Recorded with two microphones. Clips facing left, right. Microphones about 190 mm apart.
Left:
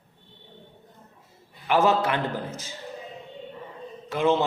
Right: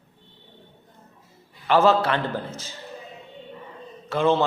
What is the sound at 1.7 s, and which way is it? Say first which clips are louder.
Speech: right 3 dB; 15° left (ahead or behind).